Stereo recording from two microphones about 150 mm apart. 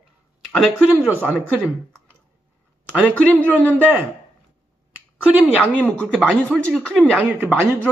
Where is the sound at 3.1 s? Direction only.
10° left (ahead or behind).